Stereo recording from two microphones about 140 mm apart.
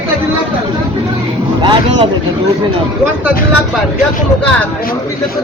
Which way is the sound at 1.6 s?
35° right (ahead or behind).